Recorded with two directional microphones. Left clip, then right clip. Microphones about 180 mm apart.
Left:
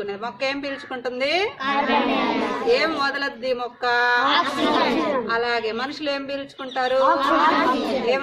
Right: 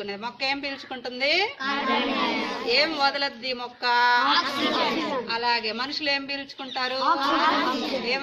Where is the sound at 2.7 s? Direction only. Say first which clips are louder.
Left 1 dB; 30° right (ahead or behind).